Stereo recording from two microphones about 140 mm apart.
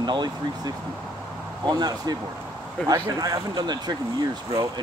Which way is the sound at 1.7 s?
30° right (ahead or behind).